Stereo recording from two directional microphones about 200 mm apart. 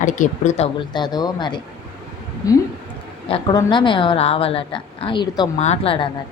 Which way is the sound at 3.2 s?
25° left (ahead or behind).